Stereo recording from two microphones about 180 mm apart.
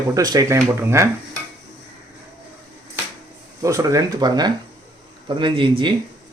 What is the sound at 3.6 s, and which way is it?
Speech, 20° right (ahead or behind).